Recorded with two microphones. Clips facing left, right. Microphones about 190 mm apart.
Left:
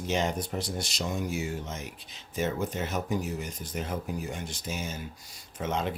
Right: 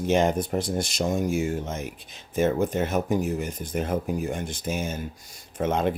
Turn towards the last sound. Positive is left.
turn(degrees=-55)  # may be behind; listen again after turning